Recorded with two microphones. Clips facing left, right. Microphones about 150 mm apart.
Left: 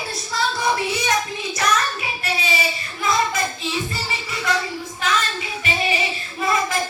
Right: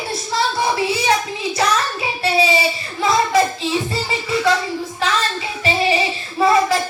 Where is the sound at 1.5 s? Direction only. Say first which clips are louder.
Right 2 dB; 30° right (ahead or behind).